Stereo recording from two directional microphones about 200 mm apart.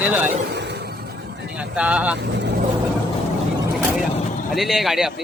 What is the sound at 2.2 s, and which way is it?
Speech, 60° right (ahead or behind).